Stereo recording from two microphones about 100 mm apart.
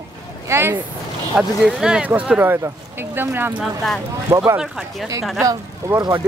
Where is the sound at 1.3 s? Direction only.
5° right (ahead or behind); by 3.6 s 20° right (ahead or behind).